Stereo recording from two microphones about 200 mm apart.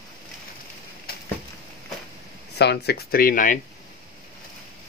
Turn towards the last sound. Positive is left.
turn(degrees=40)  # may be behind; listen again after turning